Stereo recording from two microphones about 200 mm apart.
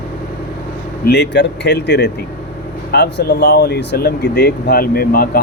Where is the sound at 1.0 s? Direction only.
55° left (ahead or behind).